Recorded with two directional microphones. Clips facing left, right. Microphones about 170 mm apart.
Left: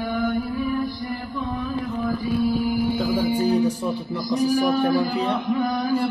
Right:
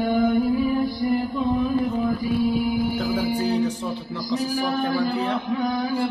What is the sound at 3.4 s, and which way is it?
Music, 10° left (ahead or behind).